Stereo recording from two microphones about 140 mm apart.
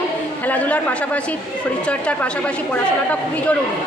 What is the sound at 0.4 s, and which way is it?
A woman's voice, 10° left (ahead or behind).